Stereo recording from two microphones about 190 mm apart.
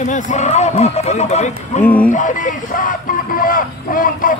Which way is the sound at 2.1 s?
40° left (ahead or behind).